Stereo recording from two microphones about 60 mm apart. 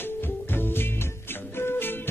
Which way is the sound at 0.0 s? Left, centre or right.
Left.